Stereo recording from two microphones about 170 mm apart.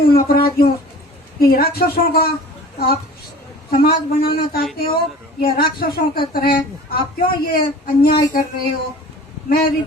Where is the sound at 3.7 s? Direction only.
65° left (ahead or behind).